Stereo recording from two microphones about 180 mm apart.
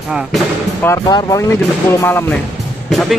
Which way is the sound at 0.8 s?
20° left (ahead or behind).